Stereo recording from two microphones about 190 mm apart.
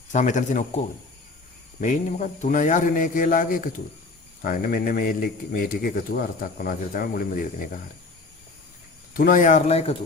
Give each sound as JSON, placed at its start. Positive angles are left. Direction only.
{"t": 0.1, "sound": "speech", "side_deg": 40}
{"t": 9.1, "sound": "speech", "side_deg": 45}